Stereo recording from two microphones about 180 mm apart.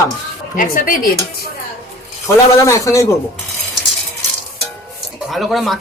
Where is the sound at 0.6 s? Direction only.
50° left (ahead or behind).